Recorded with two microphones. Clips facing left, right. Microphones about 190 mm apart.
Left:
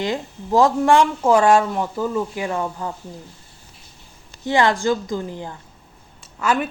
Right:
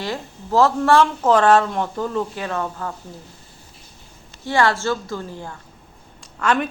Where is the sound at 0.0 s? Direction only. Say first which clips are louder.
Left 4 dB; 15° left (ahead or behind).